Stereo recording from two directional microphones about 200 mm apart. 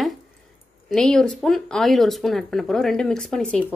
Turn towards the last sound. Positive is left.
turn(degrees=5)  # may be behind; listen again after turning